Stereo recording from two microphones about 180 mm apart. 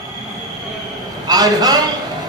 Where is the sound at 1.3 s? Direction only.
20° right (ahead or behind).